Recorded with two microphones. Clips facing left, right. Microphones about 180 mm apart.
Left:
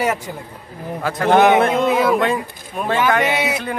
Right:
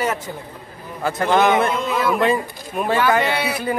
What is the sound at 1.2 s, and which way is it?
Speech, 60° left (ahead or behind).